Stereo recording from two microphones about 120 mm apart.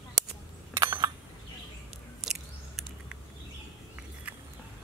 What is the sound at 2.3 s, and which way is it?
Biting, 5° right (ahead or behind).